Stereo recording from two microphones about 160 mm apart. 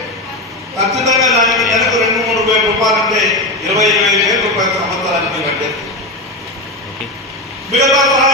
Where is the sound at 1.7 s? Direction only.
Centre (ahead or behind).